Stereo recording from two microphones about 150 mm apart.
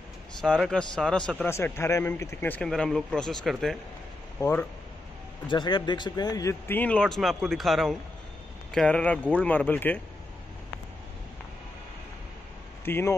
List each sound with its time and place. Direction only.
0.6 s a man's voice: 5° left (ahead or behind)
1.4 s speech: 15° left (ahead or behind)
2.7 s a man's voice: centre (ahead or behind)
4.4 s speech: 15° left (ahead or behind)
5.5 s speech: 30° left (ahead or behind)
6.7 s a man's voice: 10° left (ahead or behind)
12.8 s speech: 15° left (ahead or behind)